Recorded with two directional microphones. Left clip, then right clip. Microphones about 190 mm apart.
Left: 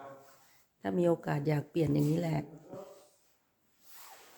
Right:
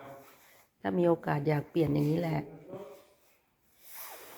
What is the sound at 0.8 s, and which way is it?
Speech, 10° left (ahead or behind).